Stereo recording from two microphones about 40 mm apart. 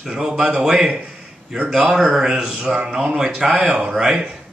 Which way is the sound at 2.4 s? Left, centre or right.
Right.